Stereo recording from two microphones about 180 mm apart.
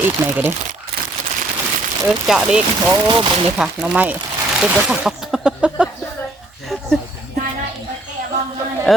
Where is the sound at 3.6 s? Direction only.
5° right (ahead or behind).